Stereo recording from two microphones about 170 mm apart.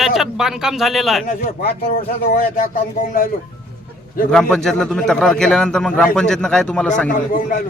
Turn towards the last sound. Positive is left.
turn(degrees=50)  # may be behind; listen again after turning